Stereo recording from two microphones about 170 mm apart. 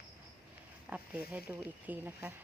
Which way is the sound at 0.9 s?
5° right (ahead or behind).